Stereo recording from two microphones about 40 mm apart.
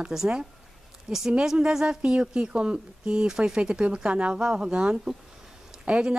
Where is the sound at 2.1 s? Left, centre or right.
Right.